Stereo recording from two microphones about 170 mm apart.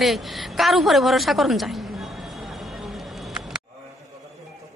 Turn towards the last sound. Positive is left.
turn(degrees=0)  # may be behind; listen again after turning